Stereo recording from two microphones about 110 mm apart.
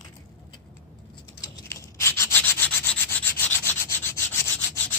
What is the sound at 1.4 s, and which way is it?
Rub, 25° left (ahead or behind).